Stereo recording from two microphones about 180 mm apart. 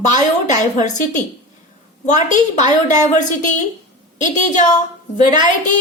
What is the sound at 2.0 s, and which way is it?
Speech, 40° left (ahead or behind).